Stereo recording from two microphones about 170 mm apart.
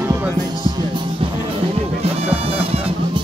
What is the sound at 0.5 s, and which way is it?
Music, 25° right (ahead or behind).